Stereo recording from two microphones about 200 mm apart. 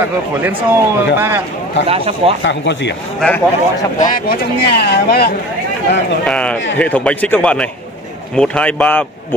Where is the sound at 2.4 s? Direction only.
65° left (ahead or behind).